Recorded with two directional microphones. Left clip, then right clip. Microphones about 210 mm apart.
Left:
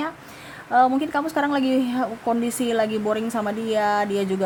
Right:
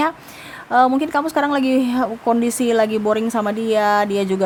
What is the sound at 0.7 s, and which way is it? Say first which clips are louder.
Speech: right 3 dB; 15° right (ahead or behind).